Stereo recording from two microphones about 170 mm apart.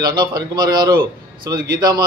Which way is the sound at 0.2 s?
25° right (ahead or behind).